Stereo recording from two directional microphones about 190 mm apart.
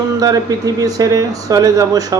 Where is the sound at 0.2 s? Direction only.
20° right (ahead or behind).